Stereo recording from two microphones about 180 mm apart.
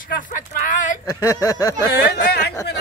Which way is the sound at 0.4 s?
45° left (ahead or behind).